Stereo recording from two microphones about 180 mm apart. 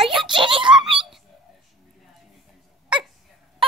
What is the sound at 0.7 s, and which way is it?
Giggle, 5° right (ahead or behind).